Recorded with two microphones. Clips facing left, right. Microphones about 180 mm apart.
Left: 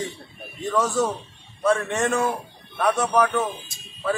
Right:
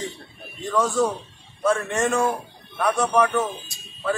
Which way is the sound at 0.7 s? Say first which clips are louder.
Right 1 dB; centre (ahead or behind).